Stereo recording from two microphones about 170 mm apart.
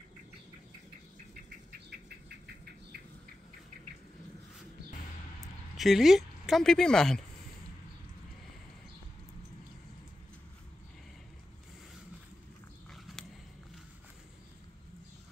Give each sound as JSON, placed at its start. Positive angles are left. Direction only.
{"t": 1.9, "sound": "rodents", "side_deg": -70}
{"t": 5.8, "sound": "speech", "side_deg": 0}